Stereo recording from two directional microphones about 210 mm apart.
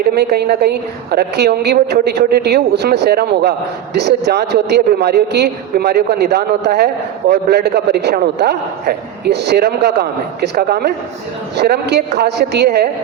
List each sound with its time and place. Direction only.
0.1 s a man's voice: 50° right (ahead or behind)